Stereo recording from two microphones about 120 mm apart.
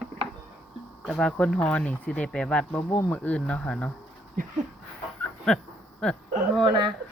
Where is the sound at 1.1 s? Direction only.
5° left (ahead or behind).